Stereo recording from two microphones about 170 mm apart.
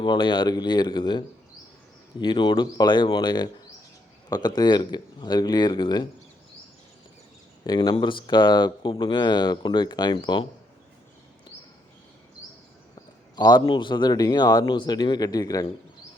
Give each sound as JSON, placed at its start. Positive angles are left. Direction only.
{"t": 0.0, "sound": "speech", "side_deg": 25}
{"t": 7.6, "sound": "speech", "side_deg": 25}
{"t": 13.3, "sound": "speech", "side_deg": 25}